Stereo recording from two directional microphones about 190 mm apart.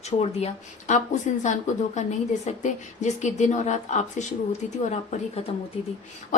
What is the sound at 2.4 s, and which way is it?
A woman's voice, 40° left (ahead or behind).